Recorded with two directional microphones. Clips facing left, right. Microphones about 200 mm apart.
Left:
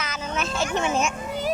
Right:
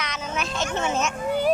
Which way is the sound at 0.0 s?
Centre (ahead or behind).